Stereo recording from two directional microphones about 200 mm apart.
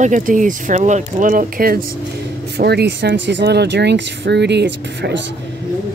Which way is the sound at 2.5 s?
55° right (ahead or behind).